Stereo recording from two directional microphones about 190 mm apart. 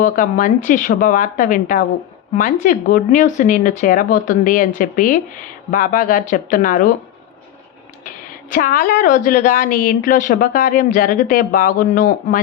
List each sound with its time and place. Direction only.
0.0 s a woman's voice: 45° left (ahead or behind)
8.0 s a woman's voice: 45° left (ahead or behind)